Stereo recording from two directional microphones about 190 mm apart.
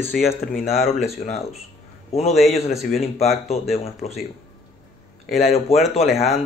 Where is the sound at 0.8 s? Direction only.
35° left (ahead or behind).